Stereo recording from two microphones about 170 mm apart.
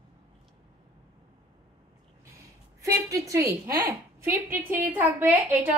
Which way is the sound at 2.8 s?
20° right (ahead or behind).